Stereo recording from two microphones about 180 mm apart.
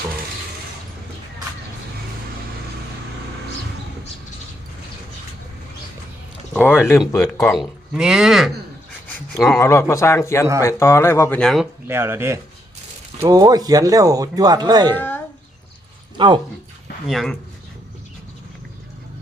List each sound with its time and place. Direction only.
6.5 s speech: 10° left (ahead or behind)
7.5 s speech: centre (ahead or behind)
9.0 s a sound: 5° left (ahead or behind)
9.6 s speech: 15° left (ahead or behind)
11.9 s speech: 15° right (ahead or behind)
14.9 s speech: 10° left (ahead or behind)
16.1 s speech: 25° right (ahead or behind)
17.1 s speech: centre (ahead or behind)